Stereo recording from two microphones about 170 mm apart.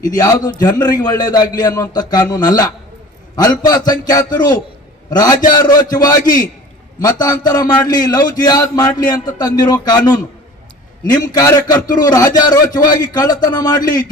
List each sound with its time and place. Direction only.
0.0 s a man's voice: 20° left (ahead or behind)